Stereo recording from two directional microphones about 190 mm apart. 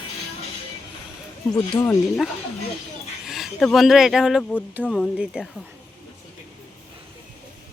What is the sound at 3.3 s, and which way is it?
Speech, centre (ahead or behind).